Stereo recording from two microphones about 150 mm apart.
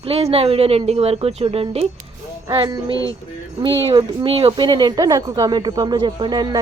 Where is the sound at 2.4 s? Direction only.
30° right (ahead or behind).